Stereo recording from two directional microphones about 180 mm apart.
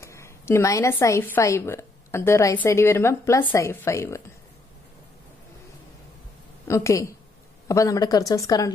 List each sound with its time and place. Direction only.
0.0 s a woman's voice: 15° left (ahead or behind)
6.7 s a woman's voice: 15° left (ahead or behind)